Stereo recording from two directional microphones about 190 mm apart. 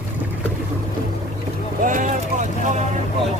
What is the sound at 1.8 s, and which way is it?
Vehicle, 40° right (ahead or behind).